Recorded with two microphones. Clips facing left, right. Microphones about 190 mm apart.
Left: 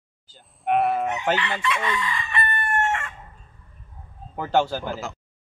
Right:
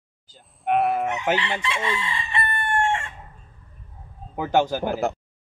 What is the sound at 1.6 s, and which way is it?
Chicken, 30° right (ahead or behind).